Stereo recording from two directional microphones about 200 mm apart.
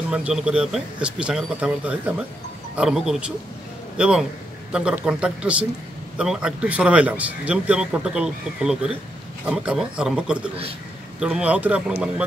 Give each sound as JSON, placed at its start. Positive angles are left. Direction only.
{"t": 0.1, "sound": "speech", "side_deg": -5}